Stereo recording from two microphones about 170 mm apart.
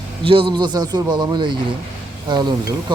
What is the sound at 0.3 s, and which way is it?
Speech, 30° right (ahead or behind).